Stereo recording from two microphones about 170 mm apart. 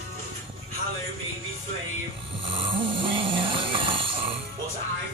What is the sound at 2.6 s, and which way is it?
Snoring, 30° right (ahead or behind).